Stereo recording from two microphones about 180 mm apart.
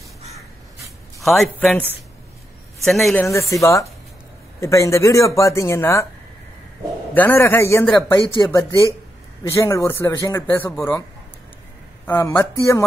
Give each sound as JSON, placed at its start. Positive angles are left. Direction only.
{"t": 1.2, "sound": "a man's voice", "side_deg": 0}
{"t": 3.3, "sound": "speech", "side_deg": 15}
{"t": 7.2, "sound": "speech", "side_deg": 10}
{"t": 12.1, "sound": "speech", "side_deg": 15}